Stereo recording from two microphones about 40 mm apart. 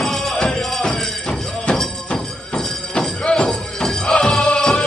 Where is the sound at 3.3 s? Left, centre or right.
Centre.